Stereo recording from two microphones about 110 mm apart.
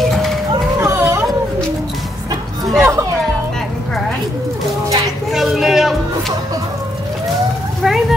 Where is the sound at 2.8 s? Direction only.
25° right (ahead or behind).